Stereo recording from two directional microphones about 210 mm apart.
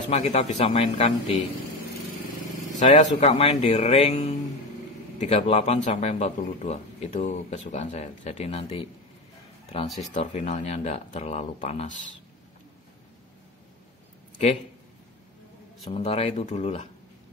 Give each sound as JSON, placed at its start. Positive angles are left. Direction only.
{"t": 0.1, "sound": "speech", "side_deg": 30}
{"t": 2.8, "sound": "speech", "side_deg": 30}
{"t": 10.0, "sound": "speech", "side_deg": 35}
{"t": 15.8, "sound": "speech", "side_deg": 30}